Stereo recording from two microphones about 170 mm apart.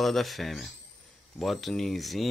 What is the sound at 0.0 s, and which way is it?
Speech, centre (ahead or behind).